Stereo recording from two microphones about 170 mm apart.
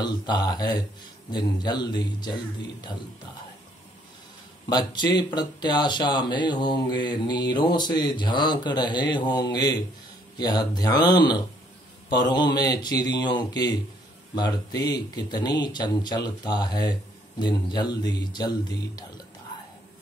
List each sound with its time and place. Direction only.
0.0 s speech: 25° left (ahead or behind)
4.6 s speech: 25° left (ahead or behind)